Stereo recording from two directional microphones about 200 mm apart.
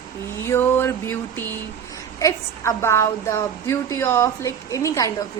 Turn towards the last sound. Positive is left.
turn(degrees=15)  # may be behind; listen again after turning